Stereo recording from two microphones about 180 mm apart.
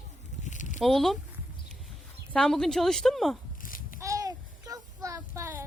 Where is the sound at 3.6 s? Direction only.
50° left (ahead or behind).